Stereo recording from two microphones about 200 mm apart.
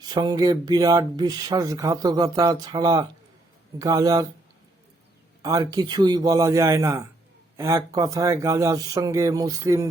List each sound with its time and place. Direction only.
0.0 s speech: 20° right (ahead or behind)
5.4 s speech: 20° right (ahead or behind)